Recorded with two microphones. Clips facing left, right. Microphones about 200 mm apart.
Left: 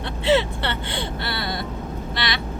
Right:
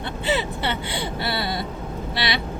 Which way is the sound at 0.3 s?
Centre (ahead or behind).